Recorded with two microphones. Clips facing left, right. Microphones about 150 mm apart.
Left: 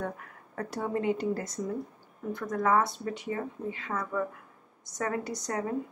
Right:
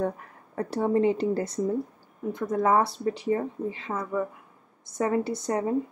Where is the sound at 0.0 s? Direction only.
30° right (ahead or behind).